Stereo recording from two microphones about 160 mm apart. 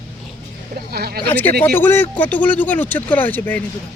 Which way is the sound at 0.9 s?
75° right (ahead or behind).